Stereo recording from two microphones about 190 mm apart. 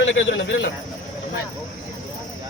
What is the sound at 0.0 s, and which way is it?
Speech, 80° left.